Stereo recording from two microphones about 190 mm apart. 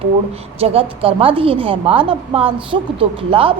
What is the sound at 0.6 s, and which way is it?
A woman's voice, 30° right (ahead or behind).